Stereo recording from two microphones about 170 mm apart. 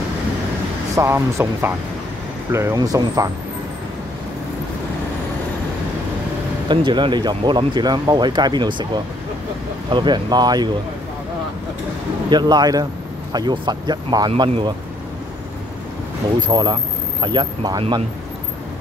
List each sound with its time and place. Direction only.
0.9 s speech: 15° right (ahead or behind)
6.7 s speech: 25° right (ahead or behind)
12.3 s speech: 25° right (ahead or behind)
16.3 s speech: 25° right (ahead or behind)